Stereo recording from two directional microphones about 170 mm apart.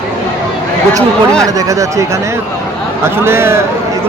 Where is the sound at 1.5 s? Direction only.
20° right (ahead or behind).